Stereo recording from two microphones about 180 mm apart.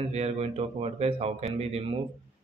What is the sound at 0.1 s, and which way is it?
A man's voice, 35° right (ahead or behind).